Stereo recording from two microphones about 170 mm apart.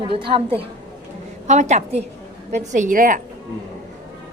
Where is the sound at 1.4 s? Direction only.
45° right (ahead or behind).